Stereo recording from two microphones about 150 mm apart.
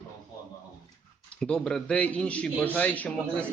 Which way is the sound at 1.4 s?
5° left (ahead or behind).